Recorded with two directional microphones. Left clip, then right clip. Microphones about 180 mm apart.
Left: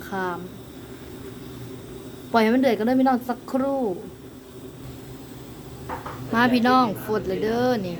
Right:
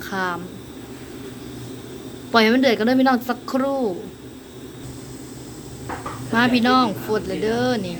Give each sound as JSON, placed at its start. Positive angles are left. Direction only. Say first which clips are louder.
{"t": 0.1, "sound": "a woman's voice", "louder": "right 3 dB", "side_deg": 10}
{"t": 2.3, "sound": "a woman's voice", "louder": "right 3 dB", "side_deg": 10}
{"t": 6.3, "sound": "a woman's voice", "louder": "right 1 dB", "side_deg": 5}